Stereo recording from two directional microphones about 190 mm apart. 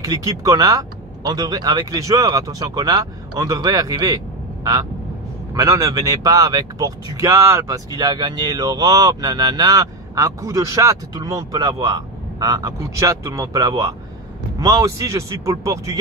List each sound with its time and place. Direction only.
0.0 s speech: 20° right (ahead or behind)
5.5 s speech: 15° right (ahead or behind)